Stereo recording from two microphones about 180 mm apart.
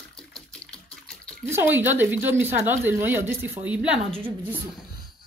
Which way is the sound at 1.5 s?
10° right (ahead or behind).